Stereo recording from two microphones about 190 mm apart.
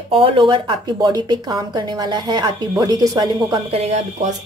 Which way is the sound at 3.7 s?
35° right (ahead or behind).